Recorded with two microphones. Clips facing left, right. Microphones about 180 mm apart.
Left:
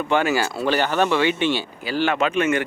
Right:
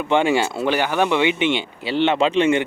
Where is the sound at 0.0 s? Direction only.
20° right (ahead or behind).